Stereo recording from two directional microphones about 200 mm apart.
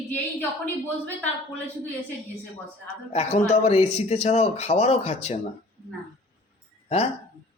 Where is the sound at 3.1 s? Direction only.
30° left (ahead or behind).